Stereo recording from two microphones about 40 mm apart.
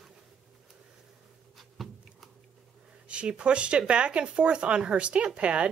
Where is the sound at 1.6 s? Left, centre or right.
Centre.